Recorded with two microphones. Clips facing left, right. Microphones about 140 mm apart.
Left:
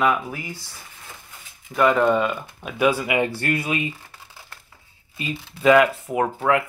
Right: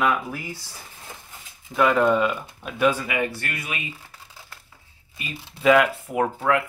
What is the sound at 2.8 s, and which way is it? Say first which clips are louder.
Speech: left 2 dB; 15° left (ahead or behind).